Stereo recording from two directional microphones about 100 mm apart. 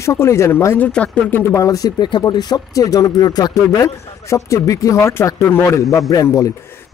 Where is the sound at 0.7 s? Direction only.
15° left (ahead or behind).